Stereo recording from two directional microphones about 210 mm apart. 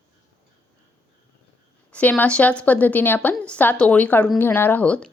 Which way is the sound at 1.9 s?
5° left (ahead or behind).